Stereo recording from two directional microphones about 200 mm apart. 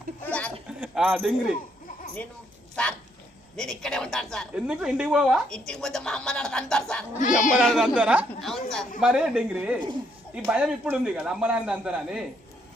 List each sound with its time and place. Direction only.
0.3 s a sound: 5° left (ahead or behind)
0.7 s a man's voice: 5° right (ahead or behind)
3.5 s a woman's voice: centre (ahead or behind)
7.2 s speech: 40° left (ahead or behind)
7.5 s a woman's voice: centre (ahead or behind)